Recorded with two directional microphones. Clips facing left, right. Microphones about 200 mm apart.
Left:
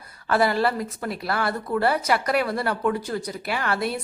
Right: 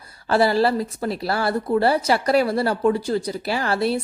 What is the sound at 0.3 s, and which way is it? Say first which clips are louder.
Speech: right 3 dB; 30° right (ahead or behind).